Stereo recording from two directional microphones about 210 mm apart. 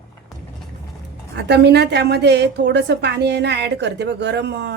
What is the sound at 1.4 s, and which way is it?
A woman's voice, 55° right (ahead or behind).